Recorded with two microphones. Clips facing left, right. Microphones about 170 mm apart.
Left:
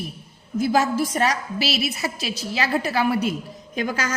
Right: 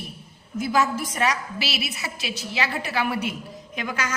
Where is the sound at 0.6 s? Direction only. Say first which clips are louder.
Left 3 dB; 35° left (ahead or behind).